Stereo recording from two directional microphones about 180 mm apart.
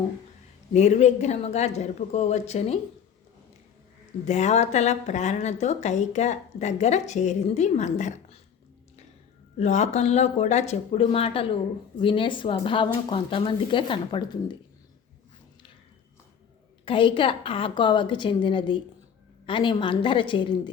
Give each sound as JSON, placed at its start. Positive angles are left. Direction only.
{"t": 0.7, "sound": "a woman's voice", "side_deg": 40}
{"t": 4.3, "sound": "a woman's voice", "side_deg": 40}
{"t": 9.6, "sound": "a woman's voice", "side_deg": 40}
{"t": 16.8, "sound": "speech", "side_deg": 30}